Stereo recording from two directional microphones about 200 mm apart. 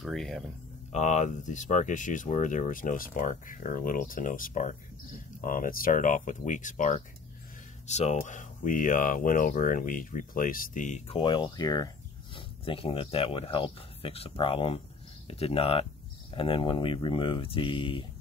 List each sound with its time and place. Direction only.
0.0 s speech: centre (ahead or behind)
0.9 s speech: 35° left (ahead or behind)